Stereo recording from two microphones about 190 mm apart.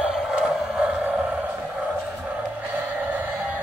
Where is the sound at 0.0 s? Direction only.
5° right (ahead or behind).